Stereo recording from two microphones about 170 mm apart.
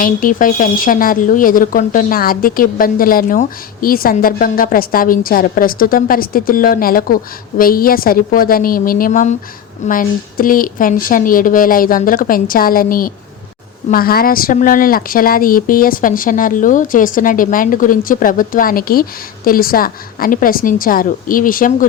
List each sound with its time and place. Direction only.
0.0 s speech: 55° left (ahead or behind)